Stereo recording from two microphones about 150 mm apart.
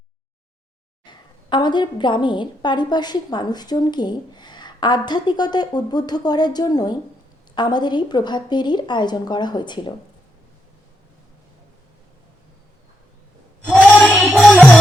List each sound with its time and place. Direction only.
1.0 s a woman's voice: 30° left (ahead or behind)
14.1 s music: centre (ahead or behind)